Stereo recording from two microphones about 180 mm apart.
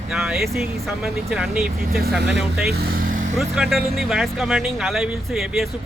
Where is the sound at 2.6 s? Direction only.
60° right (ahead or behind).